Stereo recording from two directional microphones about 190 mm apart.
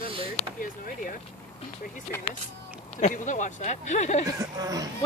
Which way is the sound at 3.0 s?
40° left (ahead or behind).